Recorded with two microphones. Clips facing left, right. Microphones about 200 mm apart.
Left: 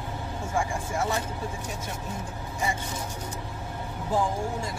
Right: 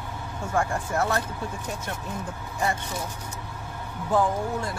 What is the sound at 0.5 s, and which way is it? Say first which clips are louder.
Speech: right 3 dB; 65° right (ahead or behind).